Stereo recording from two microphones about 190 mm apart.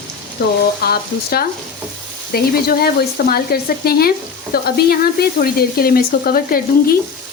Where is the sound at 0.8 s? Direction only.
55° left (ahead or behind).